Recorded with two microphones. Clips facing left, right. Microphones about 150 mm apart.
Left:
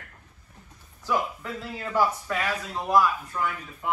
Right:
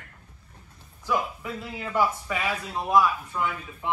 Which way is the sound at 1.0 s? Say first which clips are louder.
Even; 10° right (ahead or behind).